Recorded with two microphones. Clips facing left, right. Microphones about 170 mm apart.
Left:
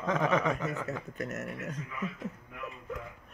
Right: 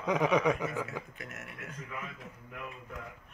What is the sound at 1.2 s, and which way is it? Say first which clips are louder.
Speech: left 9 dB; 40° left (ahead or behind).